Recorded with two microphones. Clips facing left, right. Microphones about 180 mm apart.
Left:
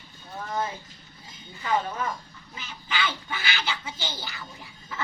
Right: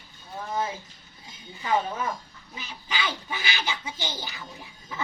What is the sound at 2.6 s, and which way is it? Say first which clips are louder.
Speech: left 1 dB; 10° right (ahead or behind).